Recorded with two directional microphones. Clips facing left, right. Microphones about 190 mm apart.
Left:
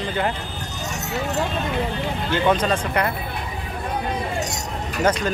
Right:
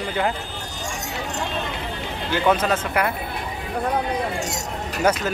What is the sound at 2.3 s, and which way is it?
Speech, 5° right (ahead or behind).